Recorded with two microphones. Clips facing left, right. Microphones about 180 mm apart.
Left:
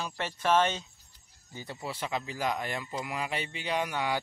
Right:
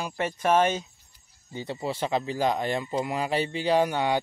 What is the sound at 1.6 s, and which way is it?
A man's voice, 25° right (ahead or behind).